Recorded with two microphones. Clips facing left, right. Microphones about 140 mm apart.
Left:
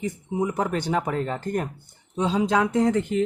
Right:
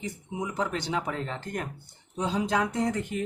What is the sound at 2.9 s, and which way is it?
Speech, 90° left.